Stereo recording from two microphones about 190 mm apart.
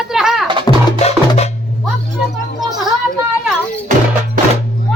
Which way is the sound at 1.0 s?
35° left (ahead or behind).